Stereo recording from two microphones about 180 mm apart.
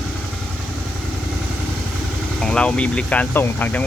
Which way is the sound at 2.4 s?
5° left (ahead or behind).